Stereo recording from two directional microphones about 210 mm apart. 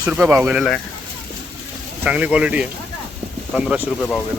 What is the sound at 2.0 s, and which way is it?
Speech, 5° right (ahead or behind).